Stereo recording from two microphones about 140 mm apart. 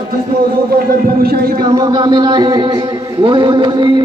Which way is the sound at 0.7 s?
90° right.